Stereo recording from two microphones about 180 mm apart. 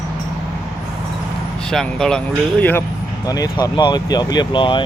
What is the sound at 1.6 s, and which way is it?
Speech, 5° left (ahead or behind).